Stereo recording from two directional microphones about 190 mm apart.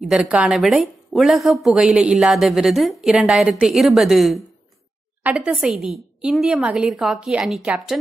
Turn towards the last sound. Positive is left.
turn(degrees=-5)  # may be behind; listen again after turning